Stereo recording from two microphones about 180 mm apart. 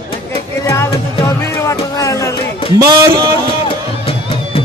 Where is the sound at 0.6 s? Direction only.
15° left (ahead or behind).